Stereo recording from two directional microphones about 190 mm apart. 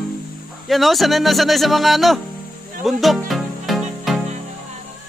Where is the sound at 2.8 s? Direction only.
Centre (ahead or behind).